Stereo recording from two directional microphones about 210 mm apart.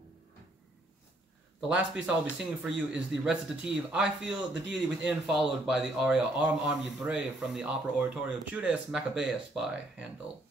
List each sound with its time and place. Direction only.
1.7 s speech: 5° right (ahead or behind)